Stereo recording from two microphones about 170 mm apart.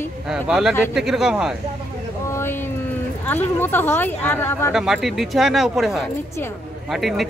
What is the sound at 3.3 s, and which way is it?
Speech, 10° left (ahead or behind).